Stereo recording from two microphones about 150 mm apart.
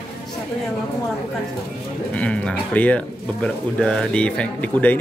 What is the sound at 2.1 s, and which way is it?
Speech, 10° left (ahead or behind).